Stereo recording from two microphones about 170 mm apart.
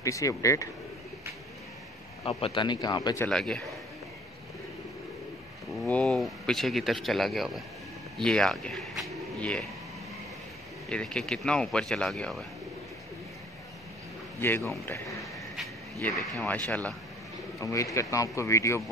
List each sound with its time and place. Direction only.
0.0 s speech: 20° left (ahead or behind)
2.2 s speech: 30° left (ahead or behind)
3.3 s speech: 5° left (ahead or behind)
5.9 s speech: 5° left (ahead or behind)
10.9 s speech: 5° left (ahead or behind)
16.0 s speech: centre (ahead or behind); by 18.8 s 15° left (ahead or behind)